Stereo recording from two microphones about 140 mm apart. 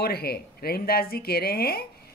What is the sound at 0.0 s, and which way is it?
Speech, 90° left.